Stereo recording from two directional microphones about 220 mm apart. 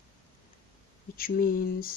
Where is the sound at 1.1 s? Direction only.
40° left (ahead or behind).